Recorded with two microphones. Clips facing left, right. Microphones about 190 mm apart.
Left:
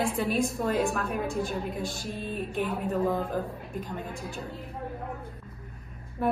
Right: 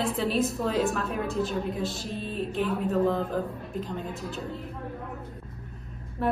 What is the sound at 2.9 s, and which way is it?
Speech, 5° left (ahead or behind).